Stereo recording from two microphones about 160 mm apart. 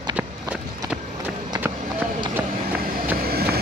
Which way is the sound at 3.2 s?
75° right (ahead or behind).